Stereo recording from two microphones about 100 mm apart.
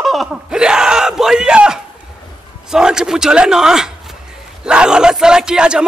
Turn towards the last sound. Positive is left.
turn(degrees=-10)  # may be behind; listen again after turning